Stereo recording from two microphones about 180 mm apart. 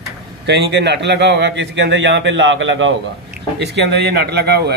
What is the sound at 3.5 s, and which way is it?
Speech, 70° right (ahead or behind).